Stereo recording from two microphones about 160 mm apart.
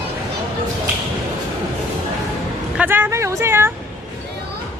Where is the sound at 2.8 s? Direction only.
15° right (ahead or behind).